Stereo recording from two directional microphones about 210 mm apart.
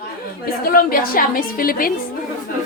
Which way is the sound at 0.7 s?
45° left (ahead or behind).